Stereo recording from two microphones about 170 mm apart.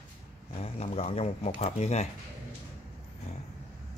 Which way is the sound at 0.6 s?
40° left (ahead or behind).